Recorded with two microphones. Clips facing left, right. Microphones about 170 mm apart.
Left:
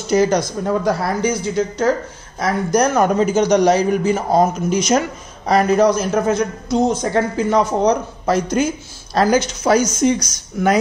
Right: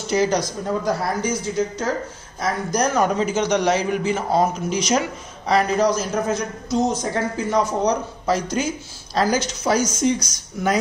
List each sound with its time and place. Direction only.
0.1 s a man's voice: 50° left (ahead or behind)